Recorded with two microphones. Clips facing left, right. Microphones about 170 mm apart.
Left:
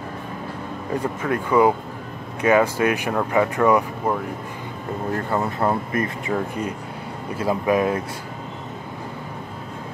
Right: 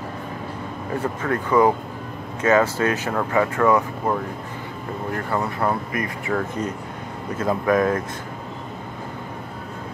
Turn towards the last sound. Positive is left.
turn(degrees=10)  # may be behind; listen again after turning